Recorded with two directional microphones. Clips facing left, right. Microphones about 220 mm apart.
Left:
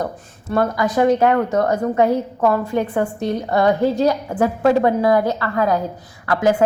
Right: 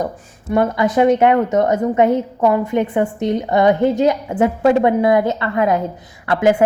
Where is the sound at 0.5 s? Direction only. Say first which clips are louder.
Right 3 dB; 20° right (ahead or behind).